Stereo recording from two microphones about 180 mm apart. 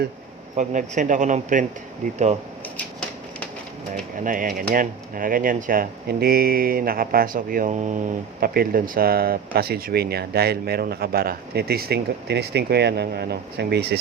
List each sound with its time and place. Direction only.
0.5 s speech: 45° right (ahead or behind)
3.9 s speech: 45° right (ahead or behind)
8.4 s speech: 55° right (ahead or behind)